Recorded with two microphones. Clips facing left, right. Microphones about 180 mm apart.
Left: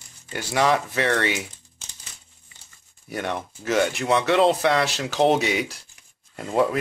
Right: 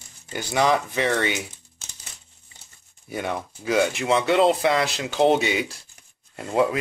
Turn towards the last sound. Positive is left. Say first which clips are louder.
# even
turn(degrees=0)  # may be behind; listen again after turning